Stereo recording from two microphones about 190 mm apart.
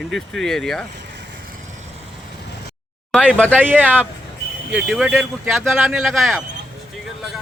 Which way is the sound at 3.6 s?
10° right (ahead or behind).